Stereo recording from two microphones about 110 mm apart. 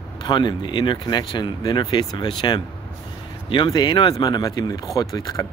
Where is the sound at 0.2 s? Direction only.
40° left (ahead or behind).